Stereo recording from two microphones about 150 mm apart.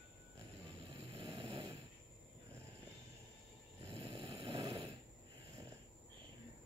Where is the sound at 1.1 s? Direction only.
40° right (ahead or behind).